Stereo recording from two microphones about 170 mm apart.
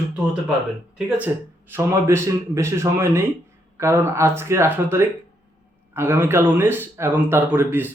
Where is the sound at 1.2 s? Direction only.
10° right (ahead or behind).